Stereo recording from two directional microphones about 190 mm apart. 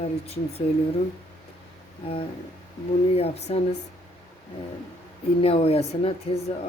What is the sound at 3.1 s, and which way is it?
Speech, 35° left (ahead or behind).